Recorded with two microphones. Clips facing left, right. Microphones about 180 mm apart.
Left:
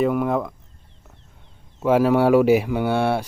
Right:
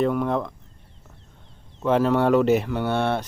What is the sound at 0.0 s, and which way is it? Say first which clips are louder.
Speech: left 2 dB; 5° left (ahead or behind).